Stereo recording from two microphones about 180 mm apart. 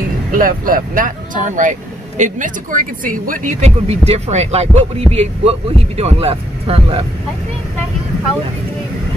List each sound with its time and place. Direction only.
0.4 s speech: 50° right (ahead or behind); by 7.0 s 30° right (ahead or behind)